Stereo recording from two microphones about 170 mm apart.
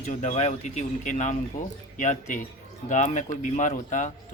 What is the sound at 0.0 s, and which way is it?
Speech, 45° left (ahead or behind).